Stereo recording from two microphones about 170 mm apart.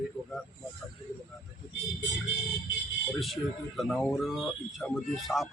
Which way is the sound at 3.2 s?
Centre (ahead or behind).